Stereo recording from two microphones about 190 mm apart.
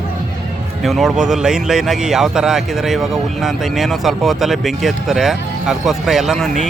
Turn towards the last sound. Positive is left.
turn(degrees=0)  # may be behind; listen again after turning